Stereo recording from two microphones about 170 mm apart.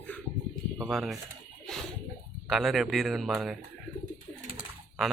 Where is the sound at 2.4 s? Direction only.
Centre (ahead or behind).